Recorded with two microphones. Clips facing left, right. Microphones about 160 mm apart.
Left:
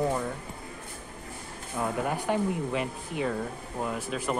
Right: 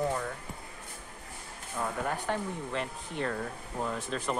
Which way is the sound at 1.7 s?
10° left (ahead or behind).